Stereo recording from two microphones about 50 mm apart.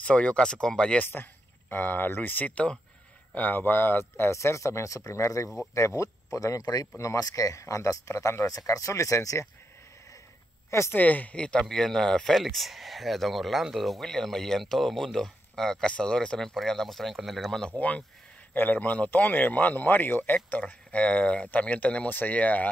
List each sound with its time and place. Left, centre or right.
0.0 s speech: left
1.0 s speech: left
2.5 s speech: left
3.3 s speech: left
4.3 s speech: left
10.9 s speech: left
11.3 s speech: centre
17.7 s speech: left
20.6 s speech: left